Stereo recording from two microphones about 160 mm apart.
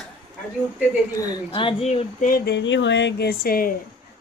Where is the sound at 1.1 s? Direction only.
30° left (ahead or behind).